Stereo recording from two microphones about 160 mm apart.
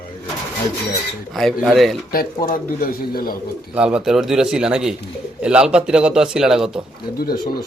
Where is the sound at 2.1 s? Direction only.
60° left (ahead or behind).